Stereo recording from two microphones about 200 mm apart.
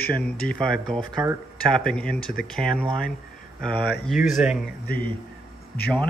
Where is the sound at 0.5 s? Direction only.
5° left (ahead or behind).